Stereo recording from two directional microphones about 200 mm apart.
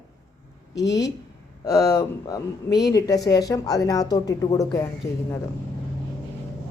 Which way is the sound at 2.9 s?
15° left (ahead or behind).